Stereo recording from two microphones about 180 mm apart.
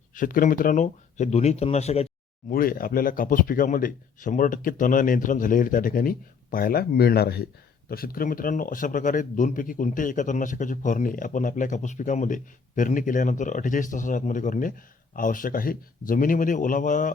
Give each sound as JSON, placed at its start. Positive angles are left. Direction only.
{"t": 0.1, "sound": "speech", "side_deg": 50}
{"t": 2.5, "sound": "speech", "side_deg": 55}